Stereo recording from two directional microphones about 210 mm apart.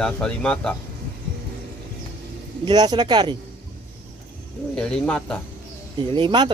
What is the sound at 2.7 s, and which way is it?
Speech, 20° right (ahead or behind).